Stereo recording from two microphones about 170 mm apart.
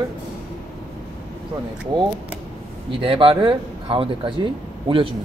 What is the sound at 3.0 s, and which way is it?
Speech, 30° right (ahead or behind).